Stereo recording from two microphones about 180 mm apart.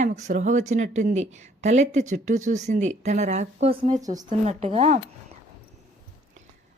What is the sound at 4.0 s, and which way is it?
Speech, 20° right (ahead or behind).